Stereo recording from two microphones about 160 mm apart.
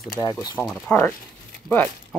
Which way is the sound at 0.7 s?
Centre (ahead or behind).